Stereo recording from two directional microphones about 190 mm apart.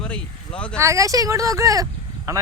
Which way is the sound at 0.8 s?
15° right (ahead or behind).